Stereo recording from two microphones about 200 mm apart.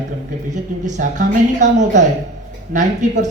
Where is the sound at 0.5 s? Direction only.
40° right (ahead or behind).